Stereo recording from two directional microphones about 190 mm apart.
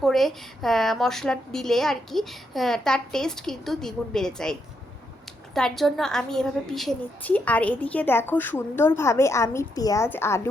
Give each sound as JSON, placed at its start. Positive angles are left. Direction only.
{"t": 0.0, "sound": "a woman's voice", "side_deg": 0}
{"t": 5.5, "sound": "a woman's voice", "side_deg": 0}